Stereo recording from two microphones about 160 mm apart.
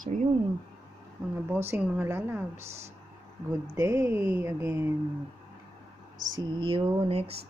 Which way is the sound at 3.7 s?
20° right (ahead or behind).